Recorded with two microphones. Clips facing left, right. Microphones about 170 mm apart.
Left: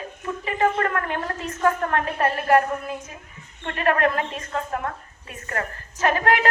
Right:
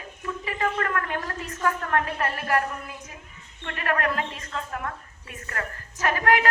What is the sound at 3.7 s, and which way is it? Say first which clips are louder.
Speech: left 5 dB; 30° left (ahead or behind).